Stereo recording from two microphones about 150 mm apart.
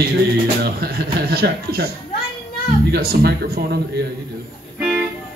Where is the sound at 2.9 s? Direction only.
90° right.